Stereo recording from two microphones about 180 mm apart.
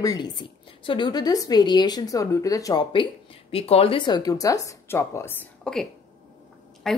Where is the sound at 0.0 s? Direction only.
20° left (ahead or behind).